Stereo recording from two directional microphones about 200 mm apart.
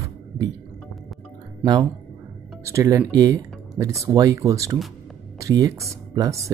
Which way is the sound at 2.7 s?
15° right (ahead or behind).